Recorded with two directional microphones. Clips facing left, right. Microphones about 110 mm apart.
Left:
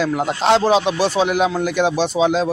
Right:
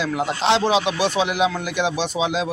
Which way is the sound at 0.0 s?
45° left (ahead or behind).